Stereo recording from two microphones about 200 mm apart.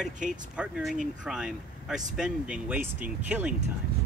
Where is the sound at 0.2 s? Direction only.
40° right (ahead or behind).